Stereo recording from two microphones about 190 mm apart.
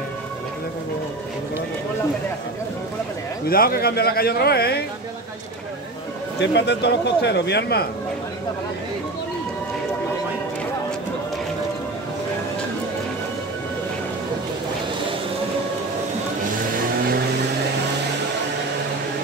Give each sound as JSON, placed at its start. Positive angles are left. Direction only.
{"t": 3.4, "sound": "speech", "side_deg": 50}
{"t": 6.4, "sound": "speech", "side_deg": 65}